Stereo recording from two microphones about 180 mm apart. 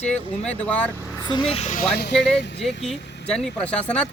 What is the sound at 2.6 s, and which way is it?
A man's voice, 5° left (ahead or behind).